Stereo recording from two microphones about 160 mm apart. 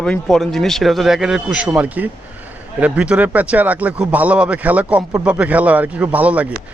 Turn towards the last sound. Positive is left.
turn(degrees=-10)  # may be behind; listen again after turning